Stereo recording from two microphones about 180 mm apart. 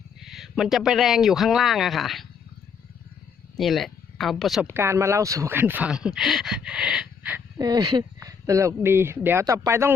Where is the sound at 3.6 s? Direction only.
Centre (ahead or behind).